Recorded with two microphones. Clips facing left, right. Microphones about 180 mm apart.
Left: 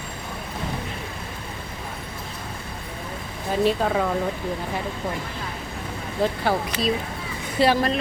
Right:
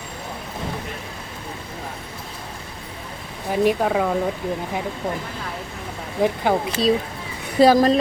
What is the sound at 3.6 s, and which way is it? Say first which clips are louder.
Speech: right 3 dB; 10° right (ahead or behind).